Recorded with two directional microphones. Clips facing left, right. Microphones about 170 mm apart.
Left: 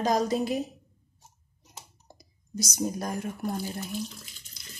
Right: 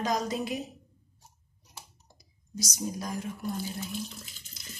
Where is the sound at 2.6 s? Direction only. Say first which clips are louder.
Left 4 dB; 55° left (ahead or behind).